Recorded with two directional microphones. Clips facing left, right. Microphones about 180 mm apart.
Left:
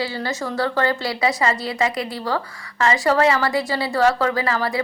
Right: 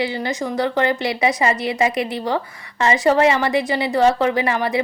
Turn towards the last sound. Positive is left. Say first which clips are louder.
# right 2 dB
turn(degrees=-20)  # may be behind; listen again after turning